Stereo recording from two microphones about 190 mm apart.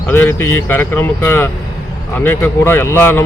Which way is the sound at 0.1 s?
10° left (ahead or behind).